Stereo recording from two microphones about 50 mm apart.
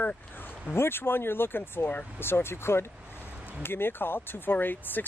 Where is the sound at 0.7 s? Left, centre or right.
Left.